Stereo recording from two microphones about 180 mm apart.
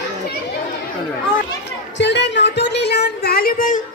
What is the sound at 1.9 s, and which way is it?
Music, 75° left (ahead or behind).